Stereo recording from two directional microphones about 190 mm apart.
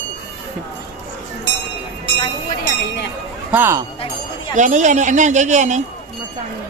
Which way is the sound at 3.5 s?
15° right (ahead or behind).